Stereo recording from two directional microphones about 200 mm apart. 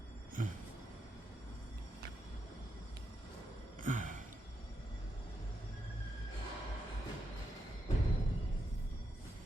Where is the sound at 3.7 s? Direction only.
40° right (ahead or behind).